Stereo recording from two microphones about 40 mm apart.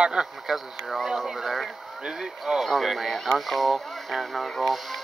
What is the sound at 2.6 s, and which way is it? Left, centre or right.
Speech, centre.